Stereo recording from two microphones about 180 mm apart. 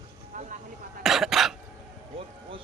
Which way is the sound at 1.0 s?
Centre (ahead or behind).